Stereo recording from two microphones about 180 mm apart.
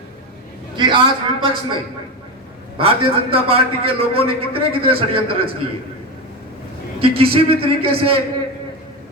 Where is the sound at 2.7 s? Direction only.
30° right (ahead or behind).